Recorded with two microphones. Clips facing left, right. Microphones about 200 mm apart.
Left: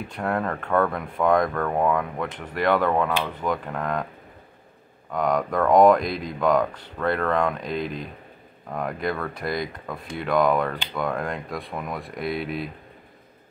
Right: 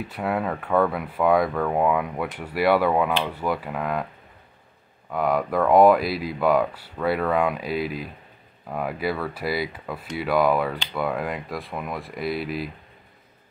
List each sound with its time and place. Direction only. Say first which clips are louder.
0.1 s speech: even; 5° right (ahead or behind)
5.1 s speech: right 1 dB; 5° right (ahead or behind)